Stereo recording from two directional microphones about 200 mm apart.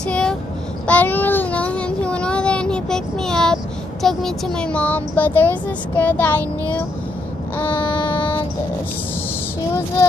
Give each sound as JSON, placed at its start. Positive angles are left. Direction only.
{"t": 0.0, "sound": "child singing", "side_deg": 5}
{"t": 4.0, "sound": "speech", "side_deg": 0}
{"t": 7.5, "sound": "speech", "side_deg": 10}
{"t": 8.1, "sound": "music", "side_deg": 10}